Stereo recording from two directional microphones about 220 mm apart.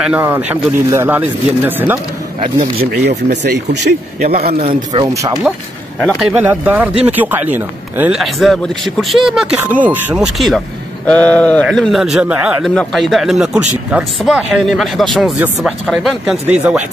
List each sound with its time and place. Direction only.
0.0 s speech: 5° right (ahead or behind)
2.4 s a man's voice: 25° right (ahead or behind)
2.9 s speech: 45° right (ahead or behind)
4.6 s a man's voice: 25° right (ahead or behind)
5.1 s speech: 15° right (ahead or behind)
6.0 s speech: centre (ahead or behind)